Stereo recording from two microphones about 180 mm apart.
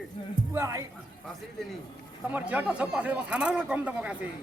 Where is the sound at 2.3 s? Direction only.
10° right (ahead or behind).